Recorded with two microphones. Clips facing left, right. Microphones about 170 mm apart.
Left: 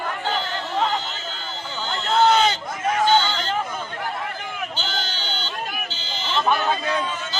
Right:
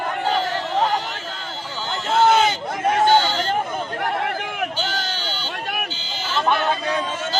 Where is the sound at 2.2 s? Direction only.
10° right (ahead or behind).